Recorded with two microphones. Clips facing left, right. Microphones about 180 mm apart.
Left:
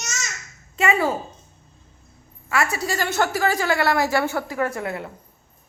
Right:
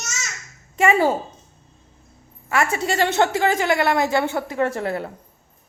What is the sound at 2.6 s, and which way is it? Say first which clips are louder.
A woman's voice: right 3 dB; 25° right (ahead or behind).